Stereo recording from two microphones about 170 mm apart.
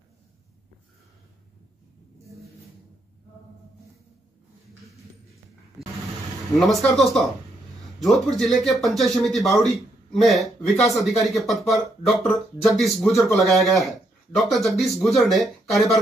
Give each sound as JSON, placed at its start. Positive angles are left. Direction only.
{"t": 6.5, "sound": "a man's voice", "side_deg": 0}